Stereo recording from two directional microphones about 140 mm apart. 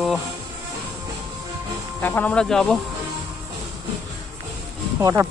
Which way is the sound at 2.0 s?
10° left (ahead or behind).